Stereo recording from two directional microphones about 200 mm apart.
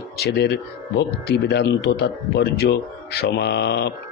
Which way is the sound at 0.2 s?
55° left (ahead or behind).